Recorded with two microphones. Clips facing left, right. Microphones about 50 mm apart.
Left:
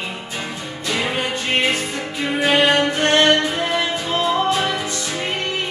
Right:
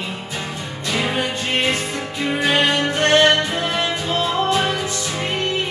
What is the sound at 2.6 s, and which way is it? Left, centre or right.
Music, left.